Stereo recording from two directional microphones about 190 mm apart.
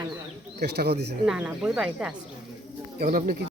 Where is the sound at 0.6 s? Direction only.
60° right (ahead or behind).